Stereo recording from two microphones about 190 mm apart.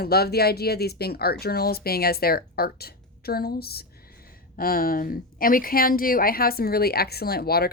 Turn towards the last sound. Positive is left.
turn(degrees=55)  # may be behind; listen again after turning